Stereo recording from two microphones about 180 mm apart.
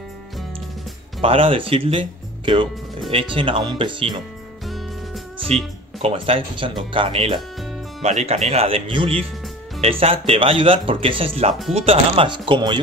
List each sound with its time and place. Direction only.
1.2 s speech: 30° right (ahead or behind)
4.6 s music: centre (ahead or behind)
5.5 s speech: 35° right (ahead or behind)